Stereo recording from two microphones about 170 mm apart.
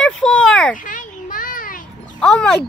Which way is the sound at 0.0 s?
5° left (ahead or behind).